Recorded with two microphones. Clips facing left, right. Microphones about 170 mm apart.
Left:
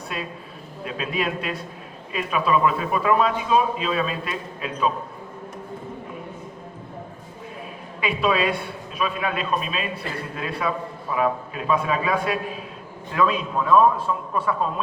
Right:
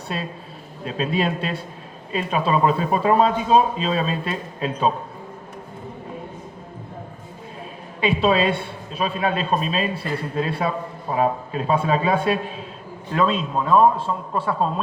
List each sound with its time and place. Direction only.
0.1 s a man's voice: 30° right (ahead or behind)
8.0 s a man's voice: 30° right (ahead or behind)